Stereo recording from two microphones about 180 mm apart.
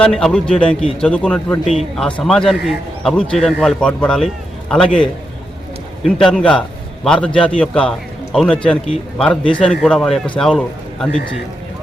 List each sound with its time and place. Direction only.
0.0 s a man's voice: centre (ahead or behind)
6.1 s a man's voice: 5° left (ahead or behind)
7.3 s a man's voice: 30° left (ahead or behind)
7.6 s speech: 5° left (ahead or behind)